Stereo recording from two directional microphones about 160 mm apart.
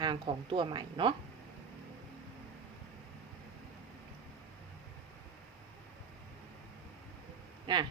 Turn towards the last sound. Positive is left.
turn(degrees=-30)  # may be behind; listen again after turning